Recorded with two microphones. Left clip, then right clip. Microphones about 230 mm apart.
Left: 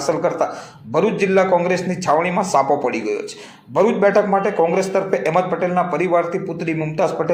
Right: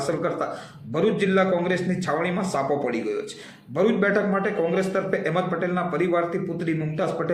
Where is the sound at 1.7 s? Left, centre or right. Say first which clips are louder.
Left 8 dB; centre.